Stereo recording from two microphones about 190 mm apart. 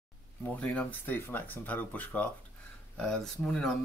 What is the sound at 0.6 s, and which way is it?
Speech, 5° left (ahead or behind).